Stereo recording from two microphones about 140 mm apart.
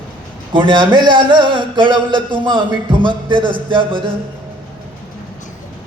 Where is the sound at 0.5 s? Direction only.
35° right (ahead or behind).